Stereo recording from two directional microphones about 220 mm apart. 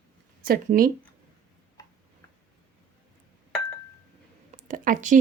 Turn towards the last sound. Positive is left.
turn(degrees=-35)  # may be behind; listen again after turning